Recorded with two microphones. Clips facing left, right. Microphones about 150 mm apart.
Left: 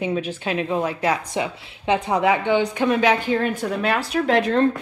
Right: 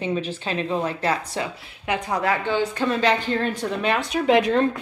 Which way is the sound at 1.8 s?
25° left (ahead or behind).